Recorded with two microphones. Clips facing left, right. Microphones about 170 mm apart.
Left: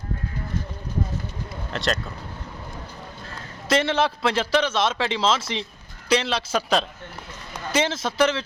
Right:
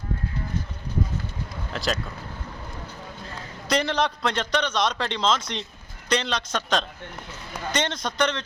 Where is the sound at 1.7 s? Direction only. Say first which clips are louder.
Left 2 dB; centre (ahead or behind).